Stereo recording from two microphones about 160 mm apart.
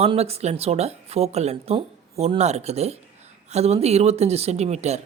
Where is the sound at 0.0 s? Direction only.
40° right (ahead or behind).